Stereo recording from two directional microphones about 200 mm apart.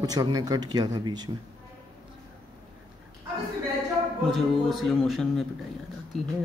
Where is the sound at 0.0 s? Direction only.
20° right (ahead or behind).